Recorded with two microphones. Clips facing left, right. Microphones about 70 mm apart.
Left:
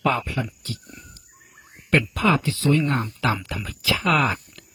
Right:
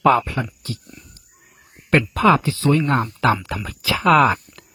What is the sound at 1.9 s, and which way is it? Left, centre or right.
Speech, right.